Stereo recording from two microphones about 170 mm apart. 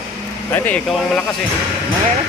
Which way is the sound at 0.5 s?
10° left (ahead or behind).